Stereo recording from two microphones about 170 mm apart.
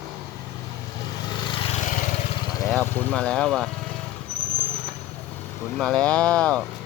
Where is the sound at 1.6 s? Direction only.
45° left (ahead or behind).